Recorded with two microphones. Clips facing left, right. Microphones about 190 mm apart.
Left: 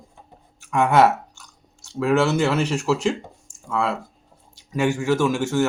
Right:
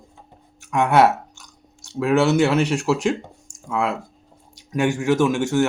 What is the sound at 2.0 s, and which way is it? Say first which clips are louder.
Speech: right 2 dB; 10° right (ahead or behind).